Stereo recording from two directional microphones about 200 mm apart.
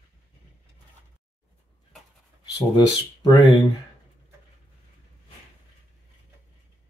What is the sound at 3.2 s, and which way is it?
Speech, 20° left (ahead or behind).